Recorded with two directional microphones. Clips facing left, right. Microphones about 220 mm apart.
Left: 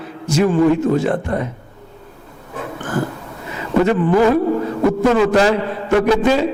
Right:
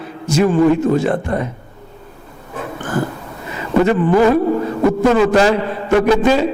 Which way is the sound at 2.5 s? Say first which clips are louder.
Right 1 dB; 25° right (ahead or behind).